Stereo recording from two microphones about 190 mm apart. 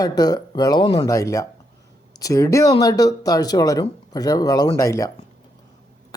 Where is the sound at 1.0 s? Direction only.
15° left (ahead or behind).